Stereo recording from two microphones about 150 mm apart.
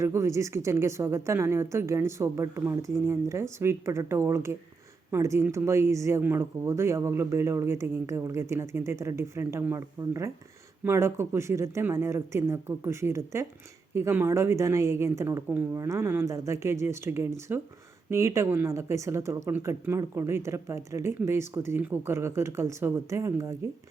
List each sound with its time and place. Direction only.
0.0 s speech: 20° right (ahead or behind)